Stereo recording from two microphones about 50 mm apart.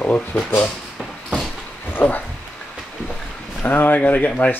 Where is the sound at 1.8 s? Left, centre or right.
Left.